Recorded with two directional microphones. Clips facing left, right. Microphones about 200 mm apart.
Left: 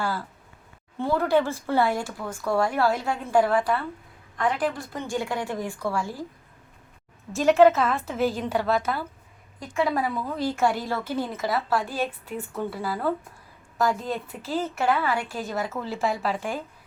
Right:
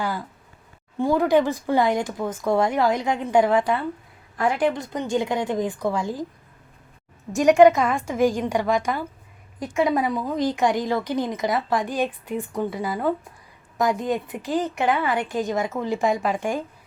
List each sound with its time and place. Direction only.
0.0 s speech: 15° right (ahead or behind)
7.3 s speech: 15° right (ahead or behind)
15.4 s a woman's voice: centre (ahead or behind)
15.7 s speech: 15° right (ahead or behind)
16.0 s a woman's voice: centre (ahead or behind)